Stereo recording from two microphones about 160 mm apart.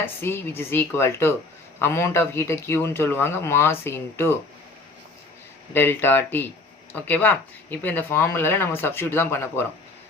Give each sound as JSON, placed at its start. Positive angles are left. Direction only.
{"t": 0.0, "sound": "speech", "side_deg": 15}
{"t": 5.7, "sound": "speech", "side_deg": 15}